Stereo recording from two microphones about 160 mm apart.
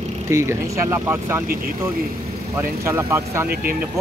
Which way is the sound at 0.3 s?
15° right (ahead or behind).